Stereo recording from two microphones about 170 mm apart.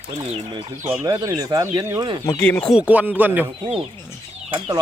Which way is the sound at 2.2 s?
15° left (ahead or behind).